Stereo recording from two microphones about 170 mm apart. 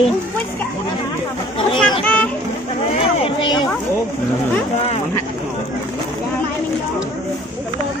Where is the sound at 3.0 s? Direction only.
35° left (ahead or behind).